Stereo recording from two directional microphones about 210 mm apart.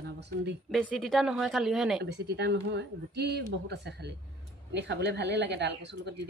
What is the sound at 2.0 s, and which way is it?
Speech, 55° right (ahead or behind).